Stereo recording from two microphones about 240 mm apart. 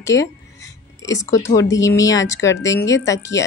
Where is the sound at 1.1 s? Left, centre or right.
Centre.